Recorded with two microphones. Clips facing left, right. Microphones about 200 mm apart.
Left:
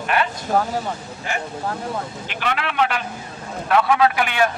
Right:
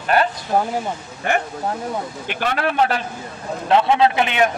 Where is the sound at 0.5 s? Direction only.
15° right (ahead or behind).